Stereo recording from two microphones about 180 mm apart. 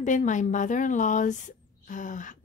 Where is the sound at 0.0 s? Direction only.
45° left (ahead or behind).